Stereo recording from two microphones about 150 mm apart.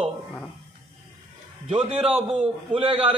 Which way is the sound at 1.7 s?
35° right (ahead or behind).